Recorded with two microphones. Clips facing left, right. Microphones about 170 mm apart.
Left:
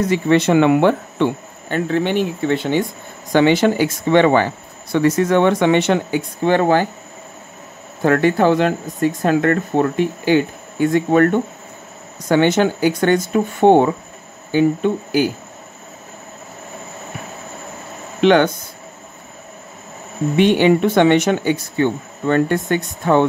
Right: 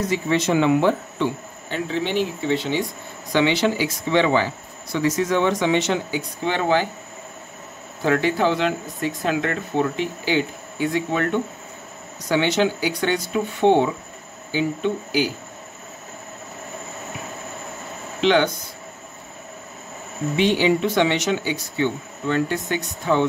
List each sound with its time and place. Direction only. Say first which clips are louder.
0.1 s speech: left 7 dB; 60° left (ahead or behind)
8.0 s speech: left 5 dB; 50° left (ahead or behind)
18.2 s speech: left 5 dB; 55° left (ahead or behind)
20.3 s speech: left 6 dB; 55° left (ahead or behind)